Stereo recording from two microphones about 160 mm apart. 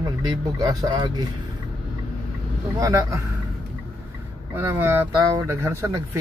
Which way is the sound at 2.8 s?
20° right (ahead or behind).